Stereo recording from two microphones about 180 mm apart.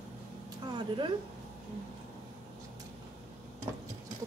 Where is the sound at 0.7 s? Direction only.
25° right (ahead or behind).